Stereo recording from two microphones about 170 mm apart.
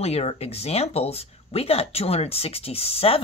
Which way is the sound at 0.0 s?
35° left (ahead or behind).